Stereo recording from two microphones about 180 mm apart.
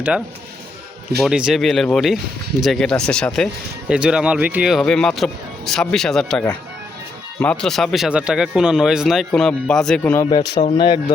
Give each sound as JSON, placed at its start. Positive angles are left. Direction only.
{"t": 1.2, "sound": "speech", "side_deg": -5}
{"t": 10.2, "sound": "a man's voice", "side_deg": 25}